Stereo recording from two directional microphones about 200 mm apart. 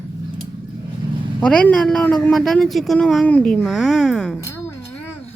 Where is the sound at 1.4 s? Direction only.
5° left (ahead or behind).